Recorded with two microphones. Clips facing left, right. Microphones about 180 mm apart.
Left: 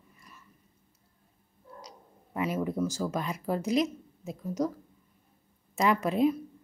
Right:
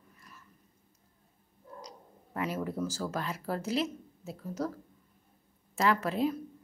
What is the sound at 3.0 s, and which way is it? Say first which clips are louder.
Speech: left 3 dB; 15° left (ahead or behind).